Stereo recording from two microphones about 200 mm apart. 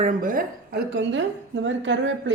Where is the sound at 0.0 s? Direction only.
40° right (ahead or behind).